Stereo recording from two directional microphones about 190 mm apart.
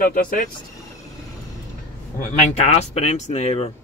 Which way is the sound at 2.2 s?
35° left (ahead or behind).